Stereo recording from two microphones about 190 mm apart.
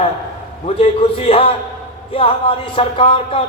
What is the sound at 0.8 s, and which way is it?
Speech, 30° left (ahead or behind).